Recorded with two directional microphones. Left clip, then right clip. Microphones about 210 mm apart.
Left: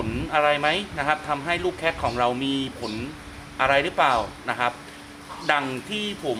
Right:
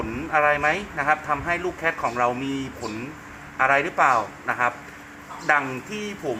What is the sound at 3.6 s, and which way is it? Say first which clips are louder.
A man's voice: right 1 dB; 15° left (ahead or behind).